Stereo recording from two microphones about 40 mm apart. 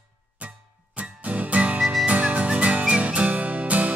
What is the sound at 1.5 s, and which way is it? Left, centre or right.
Music, right.